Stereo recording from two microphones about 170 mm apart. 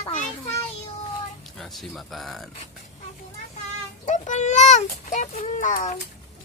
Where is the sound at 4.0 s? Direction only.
45° left (ahead or behind).